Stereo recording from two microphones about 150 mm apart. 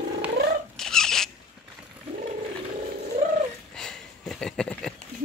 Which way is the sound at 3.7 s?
5° left (ahead or behind).